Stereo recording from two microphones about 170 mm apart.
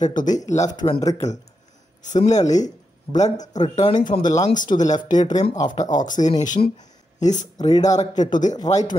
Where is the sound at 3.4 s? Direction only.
45° left (ahead or behind).